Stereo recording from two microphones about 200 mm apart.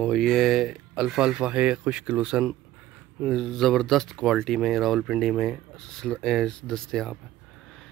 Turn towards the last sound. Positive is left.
turn(degrees=5)  # may be behind; listen again after turning